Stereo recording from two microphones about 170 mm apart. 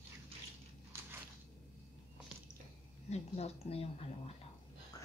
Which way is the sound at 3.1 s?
40° left (ahead or behind).